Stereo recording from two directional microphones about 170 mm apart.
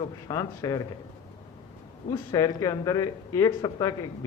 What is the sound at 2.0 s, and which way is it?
Speech, 20° left (ahead or behind).